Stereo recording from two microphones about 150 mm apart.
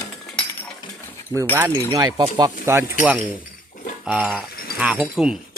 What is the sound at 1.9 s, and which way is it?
Speech, 25° right (ahead or behind).